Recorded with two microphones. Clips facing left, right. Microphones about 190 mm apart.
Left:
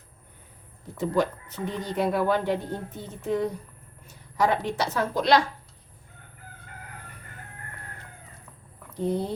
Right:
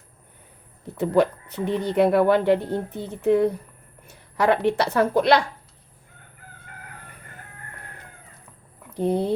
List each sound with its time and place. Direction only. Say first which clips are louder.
0.9 s a woman's voice: right 5 dB; 65° right (ahead or behind)
9.0 s speech: right 5 dB; 65° right (ahead or behind)